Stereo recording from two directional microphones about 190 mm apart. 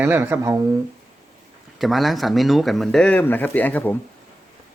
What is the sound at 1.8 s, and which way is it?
Speech, centre (ahead or behind).